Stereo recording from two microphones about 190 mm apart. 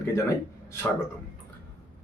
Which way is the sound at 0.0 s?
15° left (ahead or behind).